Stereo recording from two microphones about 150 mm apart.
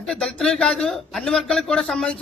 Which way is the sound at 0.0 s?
5° left (ahead or behind).